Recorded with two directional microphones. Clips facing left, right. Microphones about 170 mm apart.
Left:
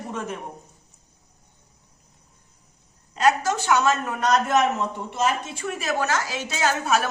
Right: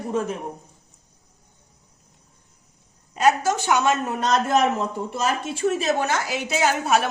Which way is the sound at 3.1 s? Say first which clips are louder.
Right 1 dB; 10° right (ahead or behind).